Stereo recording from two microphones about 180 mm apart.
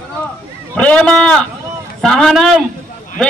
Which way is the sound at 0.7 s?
5° left (ahead or behind).